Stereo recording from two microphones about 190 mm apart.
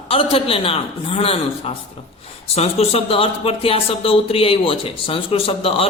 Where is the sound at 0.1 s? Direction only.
30° left (ahead or behind).